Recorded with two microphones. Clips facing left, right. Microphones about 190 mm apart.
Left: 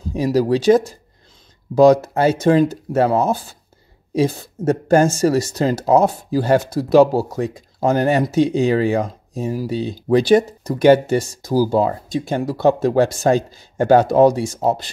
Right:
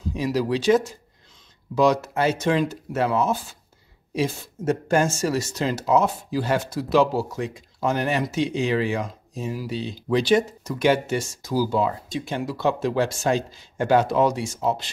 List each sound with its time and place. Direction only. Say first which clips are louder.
0.1 s speech: left 7 dB; 40° left (ahead or behind)